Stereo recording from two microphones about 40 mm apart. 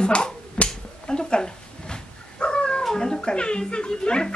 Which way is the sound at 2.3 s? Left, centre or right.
Left.